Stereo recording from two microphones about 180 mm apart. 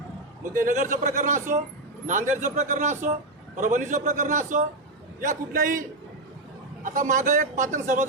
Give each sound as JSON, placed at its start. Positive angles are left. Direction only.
{"t": 0.5, "sound": "a man's voice", "side_deg": -45}
{"t": 6.8, "sound": "a man's voice", "side_deg": -45}